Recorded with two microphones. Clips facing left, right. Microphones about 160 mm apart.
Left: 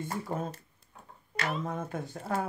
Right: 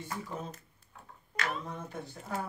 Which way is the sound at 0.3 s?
50° left (ahead or behind).